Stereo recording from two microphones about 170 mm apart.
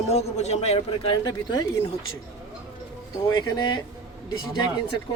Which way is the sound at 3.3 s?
25° left (ahead or behind).